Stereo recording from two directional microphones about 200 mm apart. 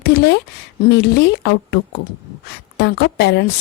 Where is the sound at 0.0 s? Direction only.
55° left (ahead or behind).